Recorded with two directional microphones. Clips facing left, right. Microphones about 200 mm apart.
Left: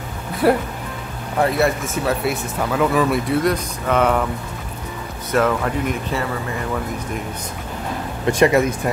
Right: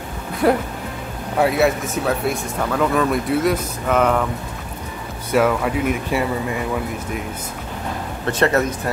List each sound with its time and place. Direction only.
0.4 s speech: centre (ahead or behind)
5.3 s speech: 5° right (ahead or behind)
8.3 s speech: 10° left (ahead or behind)